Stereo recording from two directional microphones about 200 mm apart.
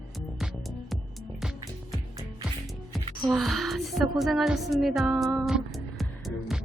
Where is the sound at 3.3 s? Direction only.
Centre (ahead or behind).